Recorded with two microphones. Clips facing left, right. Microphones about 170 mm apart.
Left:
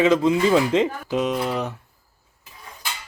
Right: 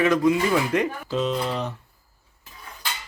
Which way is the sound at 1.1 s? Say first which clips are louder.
Left 2 dB; 10° left (ahead or behind).